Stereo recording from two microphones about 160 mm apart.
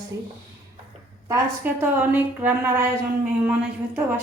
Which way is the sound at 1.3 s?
10° right (ahead or behind).